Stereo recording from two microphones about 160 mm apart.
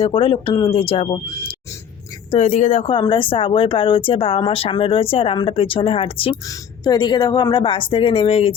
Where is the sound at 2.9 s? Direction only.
30° left (ahead or behind).